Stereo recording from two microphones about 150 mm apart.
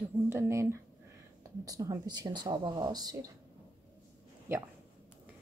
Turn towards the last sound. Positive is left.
turn(degrees=-15)  # may be behind; listen again after turning